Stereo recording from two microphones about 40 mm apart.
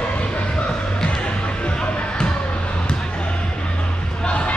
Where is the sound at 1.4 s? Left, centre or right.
Left.